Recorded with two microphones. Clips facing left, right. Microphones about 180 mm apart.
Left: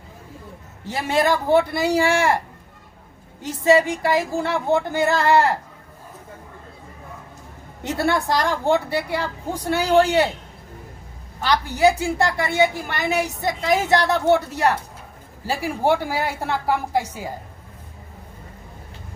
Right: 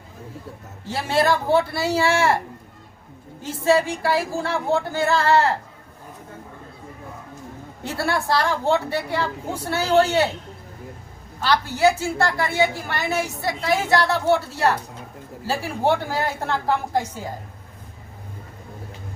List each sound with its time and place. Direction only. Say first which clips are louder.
1.1 s a woman's voice: left 1 dB; 15° left (ahead or behind)
3.4 s a woman's voice: left 2 dB; 20° left (ahead or behind)
7.9 s a woman's voice: left 2 dB; 20° left (ahead or behind)
11.3 s a woman's voice: left 1 dB; 15° left (ahead or behind)